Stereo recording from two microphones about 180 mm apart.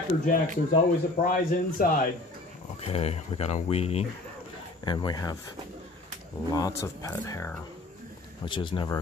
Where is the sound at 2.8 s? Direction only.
35° left (ahead or behind).